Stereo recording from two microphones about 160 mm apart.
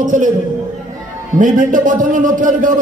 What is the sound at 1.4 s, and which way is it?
A man's voice, 55° right (ahead or behind).